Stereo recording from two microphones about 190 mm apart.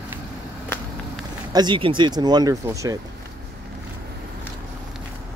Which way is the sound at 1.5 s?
25° right (ahead or behind).